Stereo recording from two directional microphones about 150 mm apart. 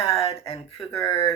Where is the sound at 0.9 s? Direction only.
25° left (ahead or behind).